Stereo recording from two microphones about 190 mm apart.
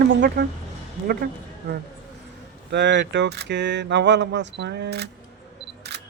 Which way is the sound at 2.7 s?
65° right (ahead or behind).